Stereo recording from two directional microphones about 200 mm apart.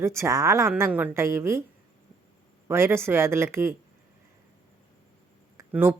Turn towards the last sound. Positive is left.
turn(degrees=-10)  # may be behind; listen again after turning